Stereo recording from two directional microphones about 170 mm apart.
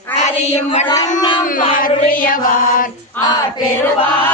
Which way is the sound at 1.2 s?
25° left (ahead or behind).